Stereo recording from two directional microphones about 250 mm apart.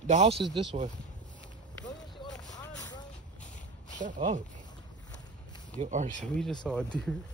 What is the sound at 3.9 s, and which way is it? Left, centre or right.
Speech, right.